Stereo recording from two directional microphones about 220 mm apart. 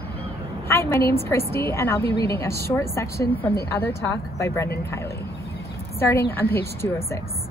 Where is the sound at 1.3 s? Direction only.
10° left (ahead or behind).